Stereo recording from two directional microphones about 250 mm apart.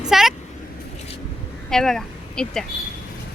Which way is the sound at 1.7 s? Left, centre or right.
Centre.